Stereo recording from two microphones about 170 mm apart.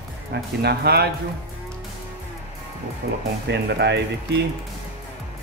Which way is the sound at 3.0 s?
90° right.